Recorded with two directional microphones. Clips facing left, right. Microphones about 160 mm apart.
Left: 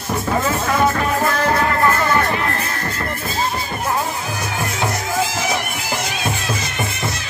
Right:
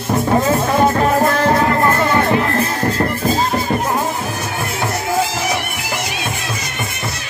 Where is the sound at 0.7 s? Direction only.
30° right (ahead or behind).